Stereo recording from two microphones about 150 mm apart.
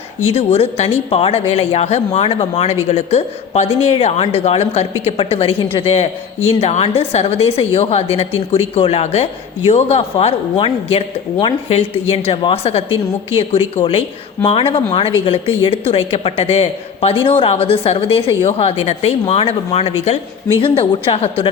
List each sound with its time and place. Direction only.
0.3 s a woman's voice: 40° left (ahead or behind)